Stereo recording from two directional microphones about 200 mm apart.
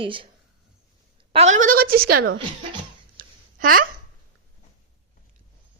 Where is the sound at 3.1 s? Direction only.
45° right (ahead or behind).